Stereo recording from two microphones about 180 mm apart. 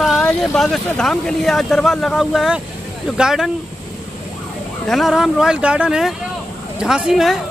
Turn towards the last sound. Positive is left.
turn(degrees=0)  # may be behind; listen again after turning